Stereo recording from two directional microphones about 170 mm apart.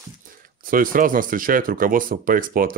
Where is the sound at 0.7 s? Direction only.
55° right (ahead or behind).